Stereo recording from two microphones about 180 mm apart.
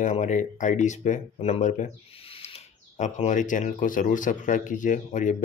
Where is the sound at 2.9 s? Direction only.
40° left (ahead or behind).